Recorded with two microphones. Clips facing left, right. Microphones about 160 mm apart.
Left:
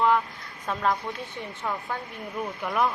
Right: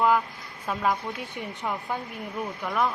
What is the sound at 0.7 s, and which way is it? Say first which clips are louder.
A woman's voice: even; 5° right (ahead or behind).